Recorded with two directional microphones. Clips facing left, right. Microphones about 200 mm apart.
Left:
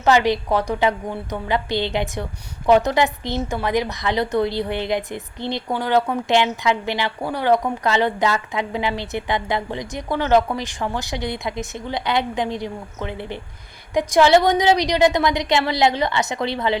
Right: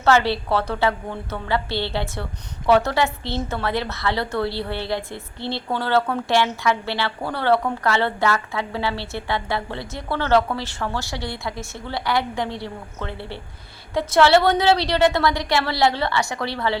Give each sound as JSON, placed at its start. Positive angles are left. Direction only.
{"t": 0.0, "sound": "a woman's voice", "side_deg": 15}